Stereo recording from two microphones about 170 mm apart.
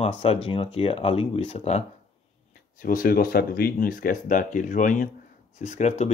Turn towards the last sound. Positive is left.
turn(degrees=40)  # may be behind; listen again after turning